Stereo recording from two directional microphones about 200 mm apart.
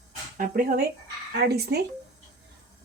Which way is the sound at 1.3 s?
55° right (ahead or behind).